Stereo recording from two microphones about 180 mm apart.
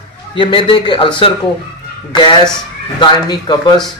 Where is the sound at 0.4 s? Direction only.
25° left (ahead or behind).